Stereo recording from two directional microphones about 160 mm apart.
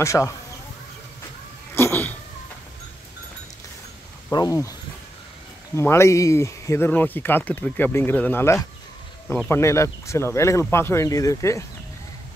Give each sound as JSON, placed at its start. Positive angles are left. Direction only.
{"t": 0.0, "sound": "speech", "side_deg": 20}
{"t": 1.8, "sound": "cat", "side_deg": 15}
{"t": 4.3, "sound": "speech", "side_deg": 20}
{"t": 5.8, "sound": "speech", "side_deg": 15}